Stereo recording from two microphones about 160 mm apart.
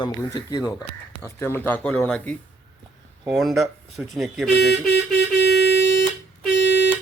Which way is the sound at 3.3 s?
Centre (ahead or behind).